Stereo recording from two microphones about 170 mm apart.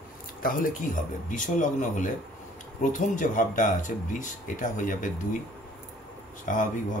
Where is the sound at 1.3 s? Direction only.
50° left (ahead or behind).